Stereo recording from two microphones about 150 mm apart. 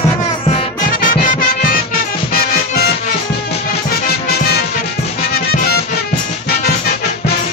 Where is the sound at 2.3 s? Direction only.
90° left.